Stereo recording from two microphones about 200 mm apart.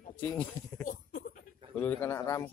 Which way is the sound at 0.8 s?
40° left (ahead or behind).